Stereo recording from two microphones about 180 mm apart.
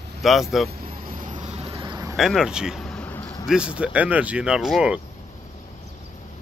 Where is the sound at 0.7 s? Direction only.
55° right (ahead or behind); by 2.2 s 20° right (ahead or behind).